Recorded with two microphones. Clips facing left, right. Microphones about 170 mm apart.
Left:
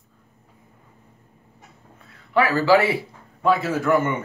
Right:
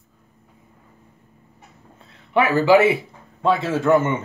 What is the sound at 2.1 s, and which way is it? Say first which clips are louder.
A man's voice: right 2 dB; 20° right (ahead or behind).